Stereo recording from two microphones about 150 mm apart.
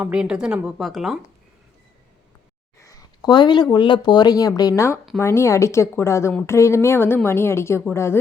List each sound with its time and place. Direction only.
0.0 s speech: 5° right (ahead or behind)
2.8 s a woman's voice: 25° left (ahead or behind)